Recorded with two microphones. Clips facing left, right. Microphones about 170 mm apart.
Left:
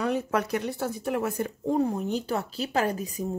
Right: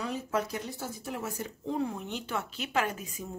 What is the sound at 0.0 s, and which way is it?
Speech, 65° left (ahead or behind).